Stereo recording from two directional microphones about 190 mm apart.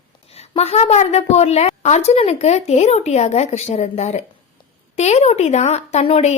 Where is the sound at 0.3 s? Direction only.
35° left (ahead or behind).